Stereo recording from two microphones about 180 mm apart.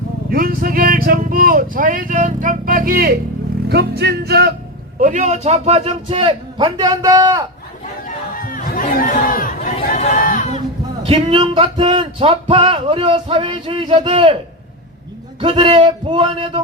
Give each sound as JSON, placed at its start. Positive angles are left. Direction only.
{"t": 0.3, "sound": "speech", "side_deg": -55}
{"t": 3.7, "sound": "music", "side_deg": -65}
{"t": 4.9, "sound": "a man's voice", "side_deg": -45}
{"t": 8.0, "sound": "chatter", "side_deg": 50}
{"t": 9.7, "sound": "chatter", "side_deg": 35}
{"t": 11.0, "sound": "speech", "side_deg": -30}
{"t": 15.4, "sound": "speech", "side_deg": -30}